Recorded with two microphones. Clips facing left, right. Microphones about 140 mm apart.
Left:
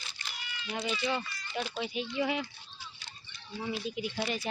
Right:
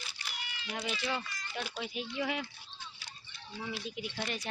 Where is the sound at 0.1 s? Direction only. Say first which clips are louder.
Even; 10° right (ahead or behind).